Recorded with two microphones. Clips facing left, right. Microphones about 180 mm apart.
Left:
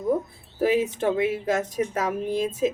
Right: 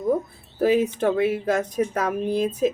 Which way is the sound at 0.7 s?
20° left (ahead or behind).